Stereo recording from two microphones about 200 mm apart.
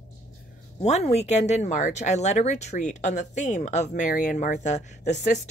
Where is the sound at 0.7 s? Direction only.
35° left (ahead or behind).